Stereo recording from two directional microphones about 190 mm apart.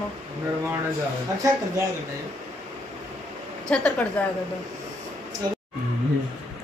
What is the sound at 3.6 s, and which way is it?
Speech, 5° left (ahead or behind).